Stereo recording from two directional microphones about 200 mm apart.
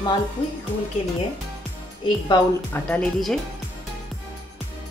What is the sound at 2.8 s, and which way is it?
Speech, 5° left (ahead or behind).